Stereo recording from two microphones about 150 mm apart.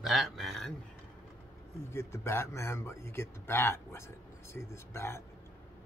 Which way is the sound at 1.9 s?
15° left (ahead or behind).